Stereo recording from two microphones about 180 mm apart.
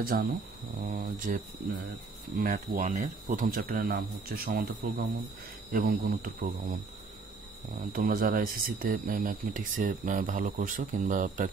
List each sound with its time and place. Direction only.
0.0 s speech: 60° right (ahead or behind)
0.9 s a sound: 50° right (ahead or behind)
2.3 s speech: 50° right (ahead or behind)
7.9 s speech: 50° right (ahead or behind)